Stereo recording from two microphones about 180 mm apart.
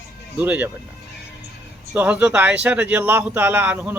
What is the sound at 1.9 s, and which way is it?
A man's voice, 10° right (ahead or behind).